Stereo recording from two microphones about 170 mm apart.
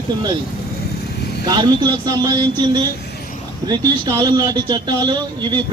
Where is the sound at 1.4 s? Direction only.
25° right (ahead or behind).